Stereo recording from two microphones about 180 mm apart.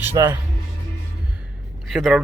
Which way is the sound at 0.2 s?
20° right (ahead or behind).